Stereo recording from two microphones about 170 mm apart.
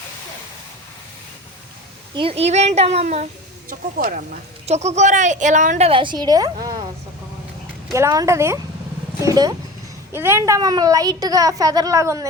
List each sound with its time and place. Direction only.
2.1 s a child's voice: 35° right (ahead or behind)
3.7 s speech: 55° right (ahead or behind)
4.6 s speech: 40° right (ahead or behind)
5.9 s a woman's voice: 30° right (ahead or behind)
7.9 s a woman's voice: 20° right (ahead or behind)